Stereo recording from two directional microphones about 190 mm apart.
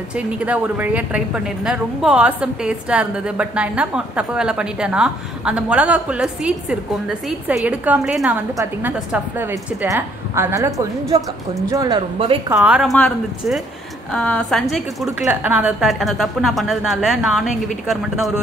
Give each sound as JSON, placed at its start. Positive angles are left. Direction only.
{"t": 0.1, "sound": "a woman's voice", "side_deg": -5}
{"t": 12.4, "sound": "a woman's voice", "side_deg": -10}